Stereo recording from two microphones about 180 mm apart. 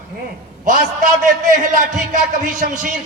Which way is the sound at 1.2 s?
50° right (ahead or behind).